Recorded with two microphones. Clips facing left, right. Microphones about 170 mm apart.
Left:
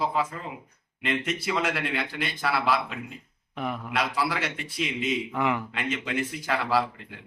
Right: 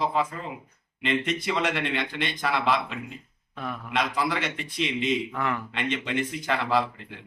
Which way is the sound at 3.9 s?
5° left (ahead or behind).